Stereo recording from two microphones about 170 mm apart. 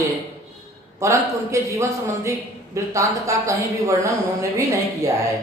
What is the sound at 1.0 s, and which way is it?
A man's voice, 15° right (ahead or behind).